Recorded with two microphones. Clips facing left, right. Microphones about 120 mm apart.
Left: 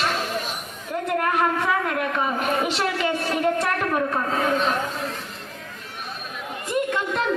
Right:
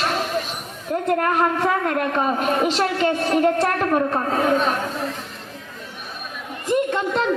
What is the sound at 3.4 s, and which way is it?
A woman's voice, 35° right (ahead or behind).